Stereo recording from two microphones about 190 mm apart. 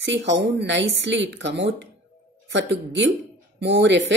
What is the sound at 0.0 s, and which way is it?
Speech, 70° right (ahead or behind).